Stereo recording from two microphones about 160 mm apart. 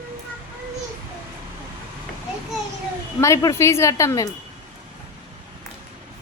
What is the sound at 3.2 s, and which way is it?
Speech, 20° left (ahead or behind).